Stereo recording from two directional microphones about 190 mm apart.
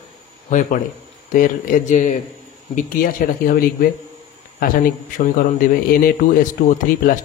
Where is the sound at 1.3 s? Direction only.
45° left (ahead or behind).